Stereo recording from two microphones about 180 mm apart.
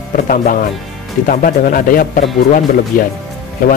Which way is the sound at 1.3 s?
50° left (ahead or behind).